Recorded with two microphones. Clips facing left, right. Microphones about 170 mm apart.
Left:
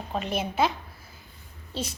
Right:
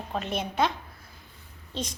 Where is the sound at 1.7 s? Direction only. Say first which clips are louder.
Left 1 dB; 5° left (ahead or behind).